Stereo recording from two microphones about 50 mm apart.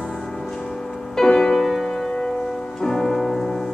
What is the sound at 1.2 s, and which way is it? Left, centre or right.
Music, centre.